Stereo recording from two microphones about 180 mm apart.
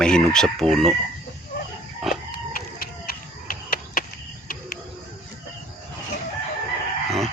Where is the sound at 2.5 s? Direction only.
55° left (ahead or behind).